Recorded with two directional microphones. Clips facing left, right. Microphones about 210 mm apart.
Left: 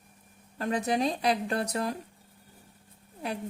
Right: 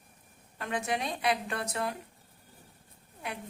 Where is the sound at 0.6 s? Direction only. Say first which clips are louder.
Left 6 dB; 35° left (ahead or behind).